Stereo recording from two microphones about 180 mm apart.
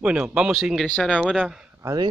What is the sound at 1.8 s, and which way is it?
Speech, 20° right (ahead or behind).